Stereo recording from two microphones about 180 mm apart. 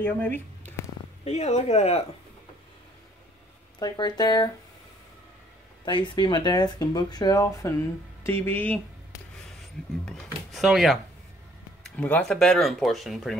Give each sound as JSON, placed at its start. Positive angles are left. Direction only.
{"t": 0.0, "sound": "speech", "side_deg": 10}
{"t": 1.2, "sound": "speech", "side_deg": 35}
{"t": 3.8, "sound": "speech", "side_deg": 20}
{"t": 5.9, "sound": "speech", "side_deg": 25}
{"t": 10.0, "sound": "a sound", "side_deg": 0}
{"t": 12.0, "sound": "speech", "side_deg": 5}